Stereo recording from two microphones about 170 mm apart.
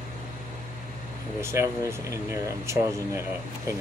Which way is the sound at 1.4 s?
15° right (ahead or behind).